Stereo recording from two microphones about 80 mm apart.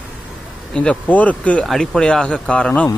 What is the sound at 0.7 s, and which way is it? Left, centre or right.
Speech, centre.